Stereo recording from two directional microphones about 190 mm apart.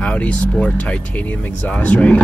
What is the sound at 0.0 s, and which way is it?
Speech, 5° left (ahead or behind).